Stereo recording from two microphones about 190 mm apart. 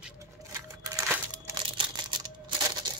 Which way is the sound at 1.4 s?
25° right (ahead or behind).